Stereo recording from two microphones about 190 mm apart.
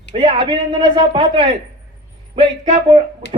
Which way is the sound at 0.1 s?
25° right (ahead or behind).